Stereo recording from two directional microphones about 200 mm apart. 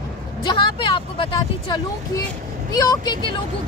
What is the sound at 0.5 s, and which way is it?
Speech, 25° left (ahead or behind).